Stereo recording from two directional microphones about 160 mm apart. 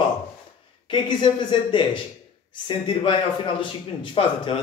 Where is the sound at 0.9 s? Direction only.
30° left (ahead or behind).